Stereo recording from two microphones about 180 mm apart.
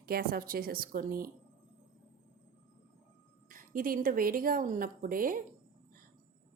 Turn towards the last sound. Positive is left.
turn(degrees=-50)  # may be behind; listen again after turning